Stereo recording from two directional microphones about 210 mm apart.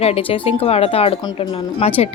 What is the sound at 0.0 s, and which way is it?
A woman's voice, 30° left (ahead or behind).